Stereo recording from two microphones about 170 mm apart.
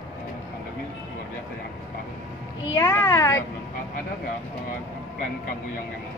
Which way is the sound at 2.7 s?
15° left (ahead or behind).